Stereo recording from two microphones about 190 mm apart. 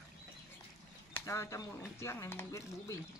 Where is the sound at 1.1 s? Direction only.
15° left (ahead or behind).